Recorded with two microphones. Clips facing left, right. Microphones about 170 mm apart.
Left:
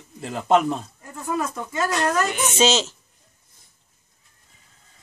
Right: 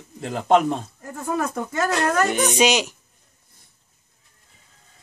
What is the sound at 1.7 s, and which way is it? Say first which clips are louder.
Speech: even; 65° right (ahead or behind).